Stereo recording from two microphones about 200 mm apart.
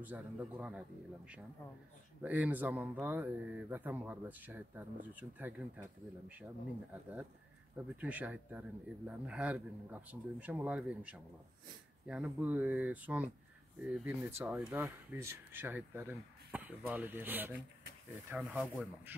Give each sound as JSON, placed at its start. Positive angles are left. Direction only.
{"t": 0.0, "sound": "speech", "side_deg": -5}
{"t": 7.7, "sound": "speech", "side_deg": -10}